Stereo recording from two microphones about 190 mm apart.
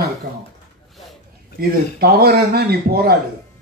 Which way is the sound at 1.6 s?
55° right (ahead or behind).